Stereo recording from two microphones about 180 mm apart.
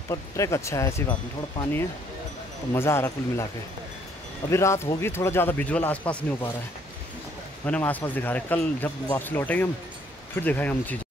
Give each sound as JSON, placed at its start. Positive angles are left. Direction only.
{"t": 0.1, "sound": "speech", "side_deg": 15}
{"t": 2.7, "sound": "speech", "side_deg": 15}
{"t": 4.5, "sound": "speech", "side_deg": 15}
{"t": 7.6, "sound": "speech", "side_deg": 10}